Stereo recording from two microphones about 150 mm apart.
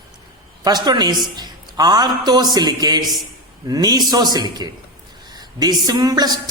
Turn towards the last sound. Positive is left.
turn(degrees=-25)  # may be behind; listen again after turning